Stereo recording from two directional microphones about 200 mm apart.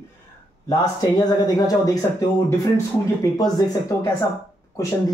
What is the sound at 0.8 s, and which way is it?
Speech, 20° left (ahead or behind).